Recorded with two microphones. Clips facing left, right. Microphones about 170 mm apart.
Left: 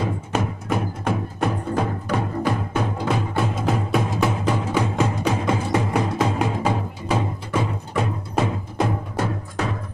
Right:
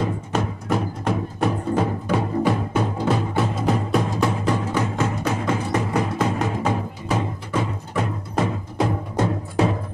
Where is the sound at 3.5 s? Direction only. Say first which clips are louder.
Right 1 dB; centre (ahead or behind).